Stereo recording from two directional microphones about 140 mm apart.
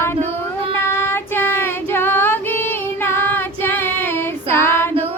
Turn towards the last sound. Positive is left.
turn(degrees=15)  # may be behind; listen again after turning